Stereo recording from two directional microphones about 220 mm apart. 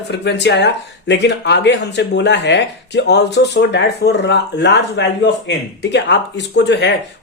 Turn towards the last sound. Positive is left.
turn(degrees=55)  # may be behind; listen again after turning